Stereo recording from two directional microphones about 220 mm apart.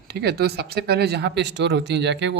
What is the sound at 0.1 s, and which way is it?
Speech, 45° right (ahead or behind).